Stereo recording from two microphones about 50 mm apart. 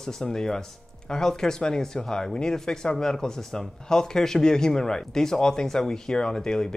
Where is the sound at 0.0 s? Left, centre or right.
Centre.